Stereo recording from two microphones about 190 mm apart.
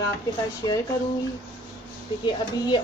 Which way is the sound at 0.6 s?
20° left (ahead or behind).